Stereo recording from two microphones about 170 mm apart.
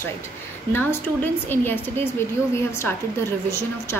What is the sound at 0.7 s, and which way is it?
A woman's voice, 10° left (ahead or behind).